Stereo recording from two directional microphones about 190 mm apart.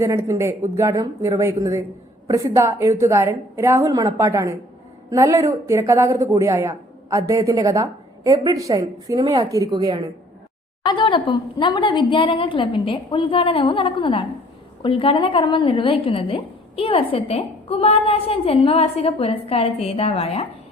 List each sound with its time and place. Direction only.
0.0 s speech: 15° right (ahead or behind)
10.8 s a woman's voice: 25° left (ahead or behind)